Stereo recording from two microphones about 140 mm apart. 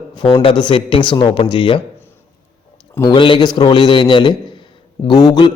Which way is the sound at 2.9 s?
20° left (ahead or behind).